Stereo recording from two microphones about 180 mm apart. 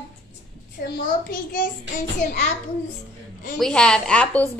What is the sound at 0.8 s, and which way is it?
Speech, 55° left (ahead or behind).